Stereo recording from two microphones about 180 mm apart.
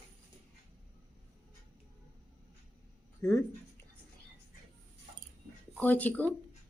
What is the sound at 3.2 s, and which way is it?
Speech, 20° left (ahead or behind).